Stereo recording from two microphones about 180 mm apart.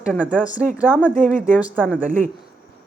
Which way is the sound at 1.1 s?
50° right (ahead or behind).